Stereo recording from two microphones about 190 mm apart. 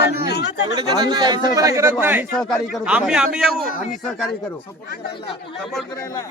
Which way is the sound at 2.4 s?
Centre (ahead or behind).